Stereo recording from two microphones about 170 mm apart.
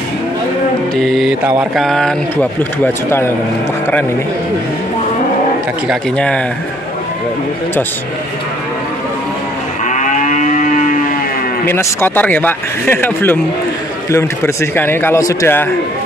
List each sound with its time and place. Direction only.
0.9 s mantra: centre (ahead or behind)
2.8 s speech: 15° left (ahead or behind)
5.9 s speech: 5° left (ahead or behind)
9.8 s moo: 45° left (ahead or behind)
11.6 s speech: 15° left (ahead or behind)